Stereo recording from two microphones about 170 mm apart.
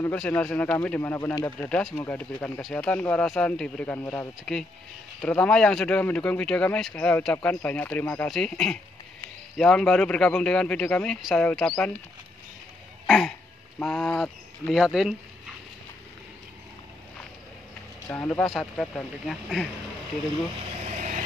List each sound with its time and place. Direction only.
0.0 s speech: 10° left (ahead or behind)
1.8 s speech: centre (ahead or behind)
13.0 s a sound: centre (ahead or behind)
13.7 s speech: 5° left (ahead or behind)
18.0 s speech: 15° left (ahead or behind)
20.5 s vehicle: 45° right (ahead or behind)